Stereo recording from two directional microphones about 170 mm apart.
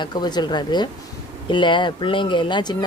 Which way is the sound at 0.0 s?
25° left (ahead or behind).